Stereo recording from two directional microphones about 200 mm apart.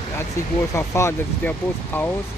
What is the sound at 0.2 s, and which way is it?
Speech, 15° left (ahead or behind).